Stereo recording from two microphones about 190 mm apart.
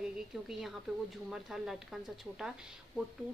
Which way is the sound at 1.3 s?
Centre (ahead or behind).